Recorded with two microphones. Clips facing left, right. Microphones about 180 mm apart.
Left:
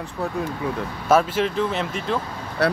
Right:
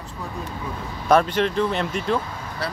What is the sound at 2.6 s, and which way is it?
Speech, 65° left (ahead or behind).